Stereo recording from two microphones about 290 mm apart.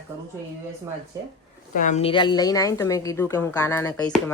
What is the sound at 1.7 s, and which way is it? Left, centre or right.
A woman's voice, left.